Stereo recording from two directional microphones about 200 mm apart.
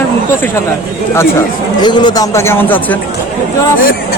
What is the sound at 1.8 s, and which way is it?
Speech, 20° left (ahead or behind).